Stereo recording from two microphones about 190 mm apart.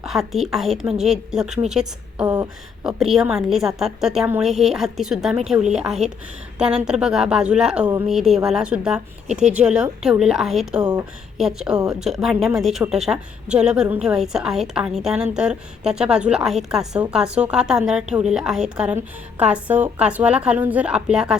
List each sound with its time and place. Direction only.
0.0 s a woman's voice: centre (ahead or behind)
2.2 s a sound: 20° right (ahead or behind)
2.8 s a woman's voice: centre (ahead or behind)